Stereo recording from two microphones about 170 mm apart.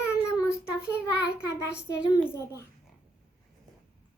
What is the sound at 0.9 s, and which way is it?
Speech, 15° left (ahead or behind).